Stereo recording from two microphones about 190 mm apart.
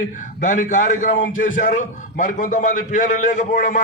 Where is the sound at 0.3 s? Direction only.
45° left (ahead or behind).